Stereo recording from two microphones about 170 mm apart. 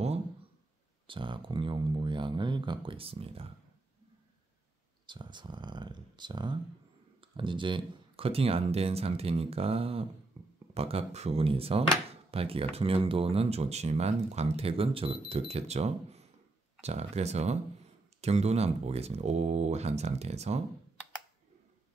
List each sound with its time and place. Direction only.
1.0 s speech: 30° right (ahead or behind)
5.0 s speech: 25° right (ahead or behind)
10.4 s a sound: 35° right (ahead or behind)
10.7 s speech: 35° right (ahead or behind)